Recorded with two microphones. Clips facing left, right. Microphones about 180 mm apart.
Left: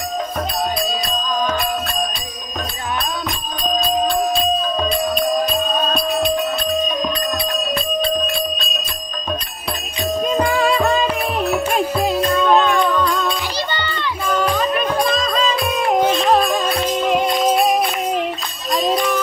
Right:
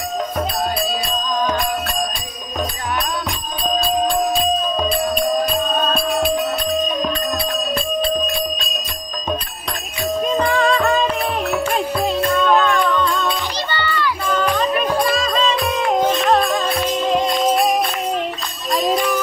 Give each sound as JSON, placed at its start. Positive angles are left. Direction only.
{"t": 4.8, "sound": "music", "side_deg": -10}
{"t": 10.2, "sound": "music", "side_deg": 5}
{"t": 12.5, "sound": "music", "side_deg": 20}
{"t": 12.9, "sound": "music", "side_deg": 5}
{"t": 13.7, "sound": "children playing", "side_deg": 20}
{"t": 14.2, "sound": "music", "side_deg": 10}
{"t": 14.8, "sound": "music", "side_deg": -5}
{"t": 18.7, "sound": "music", "side_deg": -5}